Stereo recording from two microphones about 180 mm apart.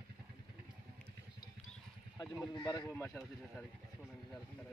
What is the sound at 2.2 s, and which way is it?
Speech, centre (ahead or behind).